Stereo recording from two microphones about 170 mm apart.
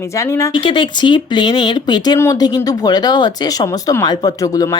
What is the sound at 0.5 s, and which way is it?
A woman's voice, 30° left (ahead or behind).